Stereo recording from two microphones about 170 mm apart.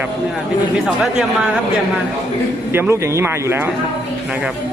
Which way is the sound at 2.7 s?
15° right (ahead or behind).